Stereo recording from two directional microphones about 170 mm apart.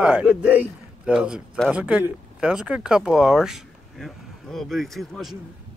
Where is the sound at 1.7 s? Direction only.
5° right (ahead or behind).